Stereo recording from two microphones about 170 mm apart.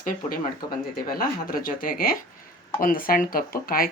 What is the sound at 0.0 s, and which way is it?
Speech, 55° left (ahead or behind).